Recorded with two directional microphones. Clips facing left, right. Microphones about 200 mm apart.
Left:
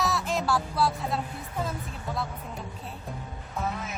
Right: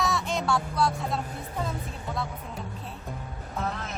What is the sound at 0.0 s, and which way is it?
Music, centre (ahead or behind).